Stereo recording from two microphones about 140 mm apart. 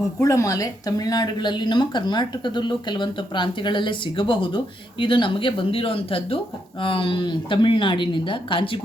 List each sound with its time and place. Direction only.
0.2 s speech: 20° left (ahead or behind); by 8.8 s 40° left (ahead or behind)